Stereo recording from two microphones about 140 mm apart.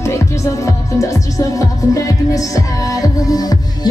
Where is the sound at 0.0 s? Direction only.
20° left (ahead or behind).